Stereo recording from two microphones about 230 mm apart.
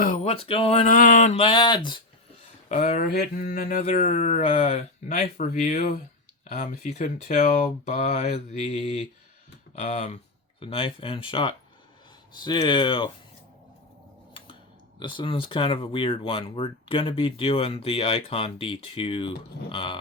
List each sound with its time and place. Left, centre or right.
0.0 s a sound: left
0.4 s speech: left
2.6 s speech: left
14.9 s speech: centre